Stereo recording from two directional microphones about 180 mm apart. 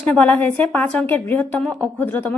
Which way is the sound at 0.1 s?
10° left (ahead or behind).